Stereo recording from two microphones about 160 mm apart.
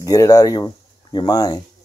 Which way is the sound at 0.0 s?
20° left (ahead or behind).